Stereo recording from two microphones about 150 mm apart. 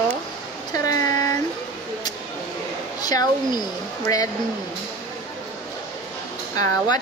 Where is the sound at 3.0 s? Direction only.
25° left (ahead or behind).